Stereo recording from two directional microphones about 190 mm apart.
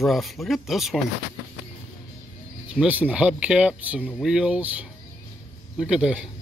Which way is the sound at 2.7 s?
5° right (ahead or behind).